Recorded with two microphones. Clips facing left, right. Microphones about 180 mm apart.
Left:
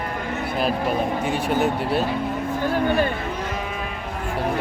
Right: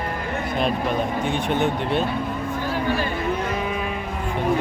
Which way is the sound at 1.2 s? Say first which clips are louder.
Even; 5° left (ahead or behind).